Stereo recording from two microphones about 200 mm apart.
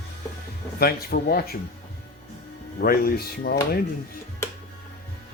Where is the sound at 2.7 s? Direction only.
50° left (ahead or behind).